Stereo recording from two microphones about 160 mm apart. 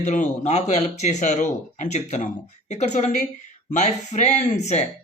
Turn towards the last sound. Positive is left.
turn(degrees=45)  # may be behind; listen again after turning